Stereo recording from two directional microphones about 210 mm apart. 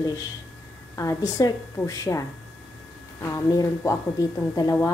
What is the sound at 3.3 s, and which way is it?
A woman's voice, 15° left (ahead or behind).